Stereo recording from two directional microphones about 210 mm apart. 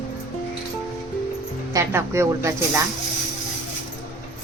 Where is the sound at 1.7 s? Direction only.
15° right (ahead or behind).